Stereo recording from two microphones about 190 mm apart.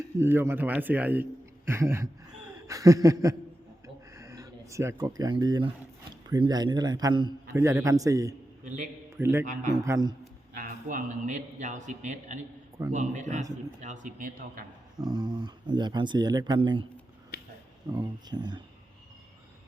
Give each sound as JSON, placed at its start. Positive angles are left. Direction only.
{"t": 0.2, "sound": "a man's voice", "side_deg": -10}
{"t": 3.8, "sound": "a sound", "side_deg": -15}
{"t": 6.2, "sound": "a man's voice", "side_deg": -20}
{"t": 8.6, "sound": "a man's voice", "side_deg": -40}
{"t": 9.1, "sound": "a man's voice", "side_deg": -15}
{"t": 10.5, "sound": "a man's voice", "side_deg": -45}
{"t": 15.0, "sound": "speech", "side_deg": -20}
{"t": 17.8, "sound": "speech", "side_deg": -20}